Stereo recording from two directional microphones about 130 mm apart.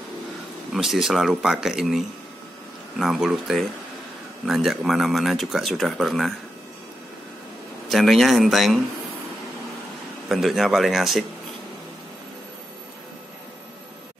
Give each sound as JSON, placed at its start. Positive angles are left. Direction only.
{"t": 0.7, "sound": "speech", "side_deg": 0}
{"t": 7.9, "sound": "speech", "side_deg": 0}
{"t": 10.2, "sound": "speech", "side_deg": 0}